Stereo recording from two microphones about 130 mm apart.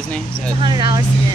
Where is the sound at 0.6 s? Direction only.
35° right (ahead or behind).